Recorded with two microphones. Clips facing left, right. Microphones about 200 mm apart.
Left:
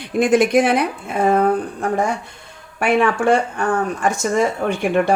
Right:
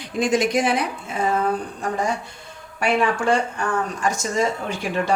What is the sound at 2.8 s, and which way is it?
Speech, 55° left (ahead or behind).